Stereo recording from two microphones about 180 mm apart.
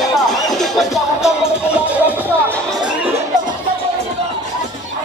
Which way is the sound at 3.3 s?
45° right (ahead or behind).